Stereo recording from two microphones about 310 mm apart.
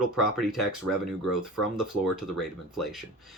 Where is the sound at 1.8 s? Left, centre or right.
Centre.